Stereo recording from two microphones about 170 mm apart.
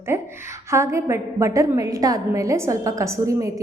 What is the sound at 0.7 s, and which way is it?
A woman's voice, 15° right (ahead or behind).